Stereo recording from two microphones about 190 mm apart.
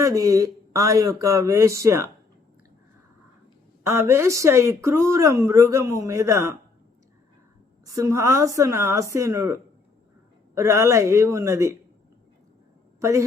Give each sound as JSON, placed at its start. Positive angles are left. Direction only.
{"t": 0.0, "sound": "speech", "side_deg": -15}
{"t": 3.8, "sound": "speech", "side_deg": -15}
{"t": 7.9, "sound": "speech", "side_deg": -15}
{"t": 13.0, "sound": "a woman's voice", "side_deg": -15}